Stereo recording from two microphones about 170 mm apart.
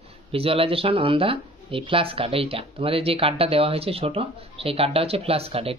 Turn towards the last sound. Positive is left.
turn(degrees=-35)  # may be behind; listen again after turning